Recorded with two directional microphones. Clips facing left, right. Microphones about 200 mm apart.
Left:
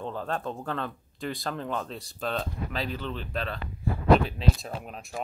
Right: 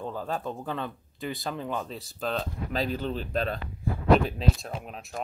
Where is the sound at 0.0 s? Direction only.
5° right (ahead or behind).